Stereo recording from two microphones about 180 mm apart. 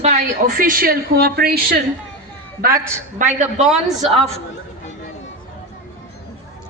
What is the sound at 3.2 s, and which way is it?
Speech, 45° right (ahead or behind).